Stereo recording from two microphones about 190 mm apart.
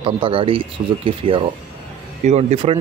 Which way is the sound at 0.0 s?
30° right (ahead or behind).